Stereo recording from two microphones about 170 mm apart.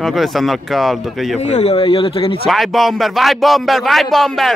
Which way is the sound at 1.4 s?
40° left (ahead or behind).